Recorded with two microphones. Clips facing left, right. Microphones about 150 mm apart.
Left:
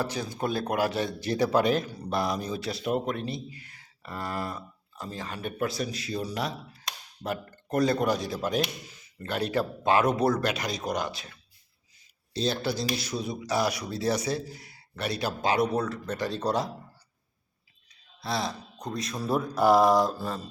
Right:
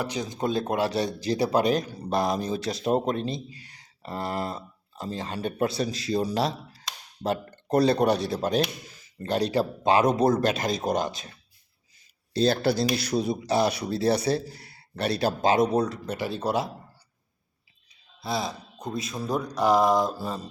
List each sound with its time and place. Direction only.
0.0 s speech: 15° right (ahead or behind)
0.9 s speech: 35° right (ahead or behind)
2.9 s speech: 35° right (ahead or behind)
7.7 s speech: 35° right (ahead or behind)
8.0 s speech: 65° right (ahead or behind)
8.4 s speech: 35° right (ahead or behind)
9.8 s speech: 20° right (ahead or behind)
12.8 s speech: 65° right (ahead or behind)
13.1 s speech: 30° right (ahead or behind); by 16.6 s 5° right (ahead or behind)
18.2 s speech: centre (ahead or behind)